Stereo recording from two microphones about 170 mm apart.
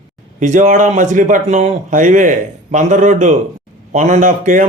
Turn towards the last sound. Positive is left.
turn(degrees=-50)  # may be behind; listen again after turning